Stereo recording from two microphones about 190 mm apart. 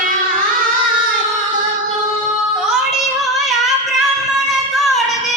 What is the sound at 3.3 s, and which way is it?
Music, centre (ahead or behind).